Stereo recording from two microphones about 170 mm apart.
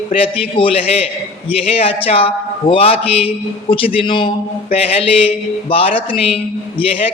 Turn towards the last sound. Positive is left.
turn(degrees=35)  # may be behind; listen again after turning